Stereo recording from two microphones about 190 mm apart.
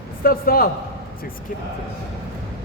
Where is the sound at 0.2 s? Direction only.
50° left (ahead or behind).